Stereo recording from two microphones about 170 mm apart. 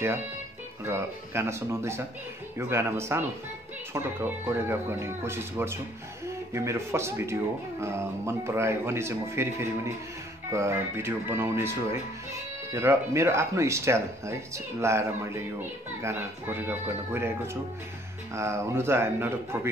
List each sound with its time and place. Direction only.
0.8 s speech: 15° right (ahead or behind)
18.3 s speech: 15° right (ahead or behind)